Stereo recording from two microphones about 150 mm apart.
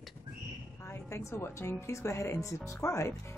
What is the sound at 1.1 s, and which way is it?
Speech, 20° left (ahead or behind).